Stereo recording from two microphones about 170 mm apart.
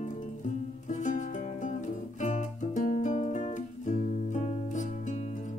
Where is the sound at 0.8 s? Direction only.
45° left (ahead or behind).